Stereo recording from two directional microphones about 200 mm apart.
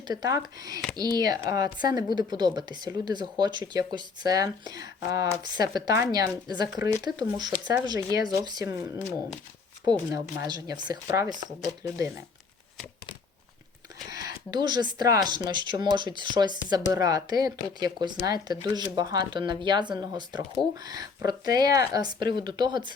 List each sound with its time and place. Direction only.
0.1 s speech: 20° right (ahead or behind)
10.1 s speech: 15° right (ahead or behind)
14.1 s speech: 20° right (ahead or behind)